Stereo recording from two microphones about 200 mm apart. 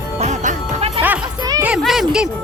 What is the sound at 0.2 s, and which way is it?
Music, 35° right (ahead or behind).